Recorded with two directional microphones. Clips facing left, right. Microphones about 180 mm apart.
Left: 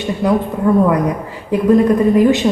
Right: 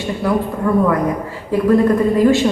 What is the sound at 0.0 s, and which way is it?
A man's voice, 20° left (ahead or behind).